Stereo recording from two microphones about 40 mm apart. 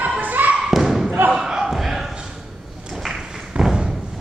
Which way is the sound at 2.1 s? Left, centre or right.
Centre.